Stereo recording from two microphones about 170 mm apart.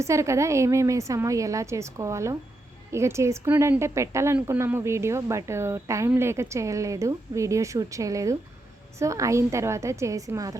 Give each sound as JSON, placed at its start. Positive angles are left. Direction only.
{"t": 0.0, "sound": "a woman's voice", "side_deg": -15}